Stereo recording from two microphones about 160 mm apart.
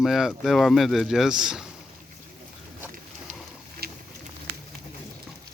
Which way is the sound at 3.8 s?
75° right (ahead or behind).